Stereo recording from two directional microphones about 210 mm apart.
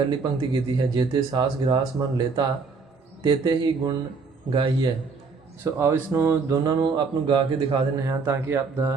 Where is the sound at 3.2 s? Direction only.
20° right (ahead or behind).